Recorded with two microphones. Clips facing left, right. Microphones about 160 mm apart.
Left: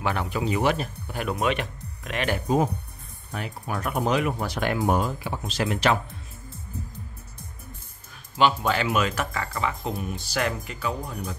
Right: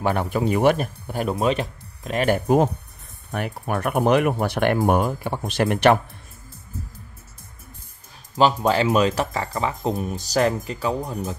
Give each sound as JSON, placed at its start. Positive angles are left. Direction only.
{"t": 0.0, "sound": "speech", "side_deg": -45}
{"t": 8.4, "sound": "speech", "side_deg": -35}